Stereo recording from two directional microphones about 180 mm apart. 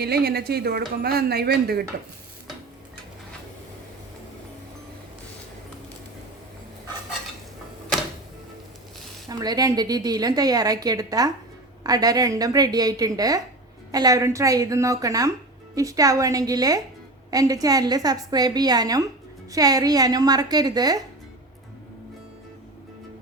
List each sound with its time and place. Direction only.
0.0 s speech: 60° right (ahead or behind)
9.3 s a woman's voice: 20° right (ahead or behind)